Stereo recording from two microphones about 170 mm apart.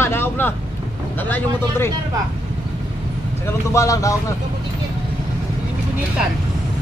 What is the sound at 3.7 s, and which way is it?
Speech, 20° left (ahead or behind).